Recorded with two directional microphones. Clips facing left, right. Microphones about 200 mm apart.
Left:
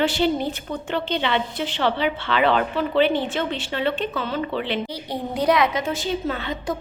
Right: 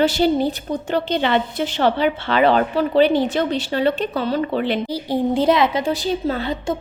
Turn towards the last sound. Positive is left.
turn(degrees=-35)  # may be behind; listen again after turning